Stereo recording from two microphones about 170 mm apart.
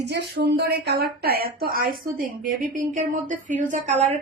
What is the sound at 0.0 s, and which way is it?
A woman's voice, 80° right.